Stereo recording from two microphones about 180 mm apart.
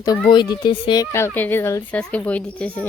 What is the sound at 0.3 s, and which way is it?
Speech, 25° left (ahead or behind).